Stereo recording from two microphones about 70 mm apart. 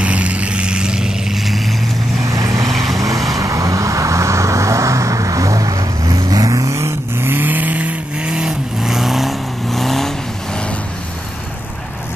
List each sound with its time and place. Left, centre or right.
0.0 s vehicle: centre
2.3 s vehicle: right
2.7 s vehicle: centre
3.3 s vehicle: right
7.2 s vehicle: right; by 10.1 s centre